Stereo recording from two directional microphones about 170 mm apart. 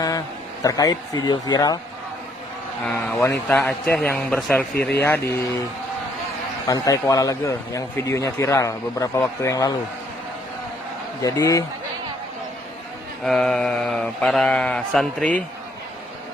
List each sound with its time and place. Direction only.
0.6 s a man's voice: 20° left (ahead or behind)
2.8 s a man's voice: 10° left (ahead or behind)
4.7 s speech: 70° left (ahead or behind)
4.9 s a man's voice: 15° left (ahead or behind)
6.7 s a man's voice: 20° left (ahead or behind)
11.2 s a man's voice: 20° left (ahead or behind)
13.2 s mantra: 5° left (ahead or behind)